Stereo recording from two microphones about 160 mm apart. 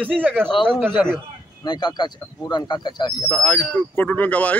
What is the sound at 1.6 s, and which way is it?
A man's voice, 25° left (ahead or behind).